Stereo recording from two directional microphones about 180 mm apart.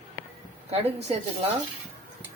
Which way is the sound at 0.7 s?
35° right (ahead or behind).